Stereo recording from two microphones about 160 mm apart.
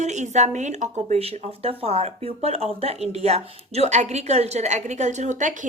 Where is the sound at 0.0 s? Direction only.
45° right (ahead or behind).